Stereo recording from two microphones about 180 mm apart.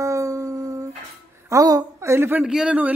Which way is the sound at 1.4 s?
20° right (ahead or behind).